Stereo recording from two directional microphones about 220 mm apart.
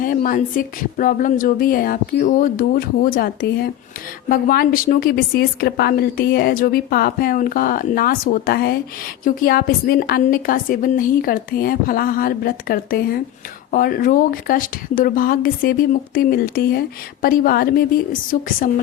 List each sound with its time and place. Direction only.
0.0 s a woman's voice: 40° left (ahead or behind)